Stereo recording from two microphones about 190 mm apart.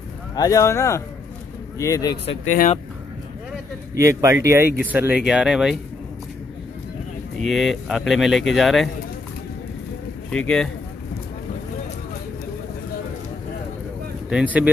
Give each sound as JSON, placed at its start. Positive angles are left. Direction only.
{"t": 0.4, "sound": "speech", "side_deg": 15}
{"t": 2.4, "sound": "speech", "side_deg": 45}
{"t": 3.9, "sound": "speech", "side_deg": -15}
{"t": 7.4, "sound": "speech", "side_deg": 0}
{"t": 10.3, "sound": "speech", "side_deg": 5}
{"t": 14.3, "sound": "speech", "side_deg": -10}